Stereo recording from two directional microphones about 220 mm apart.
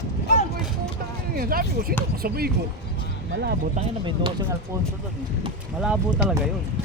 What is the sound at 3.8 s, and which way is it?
Speech, 25° right (ahead or behind).